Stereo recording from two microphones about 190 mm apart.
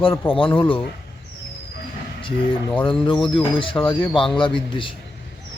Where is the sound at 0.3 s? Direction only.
30° left (ahead or behind).